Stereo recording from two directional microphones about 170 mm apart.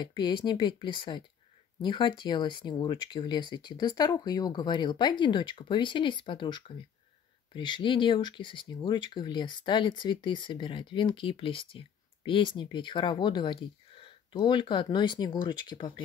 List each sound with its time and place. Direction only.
0.0 s speech: 25° left (ahead or behind)